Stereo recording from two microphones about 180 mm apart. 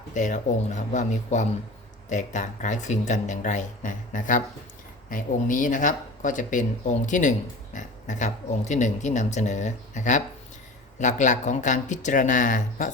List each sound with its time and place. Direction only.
0.1 s speech: 45° left (ahead or behind)